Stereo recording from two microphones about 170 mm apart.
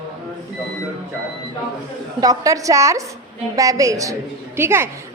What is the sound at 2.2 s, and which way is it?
A woman's voice, 20° right (ahead or behind).